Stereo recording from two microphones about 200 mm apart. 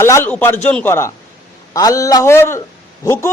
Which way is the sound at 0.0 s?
10° left (ahead or behind).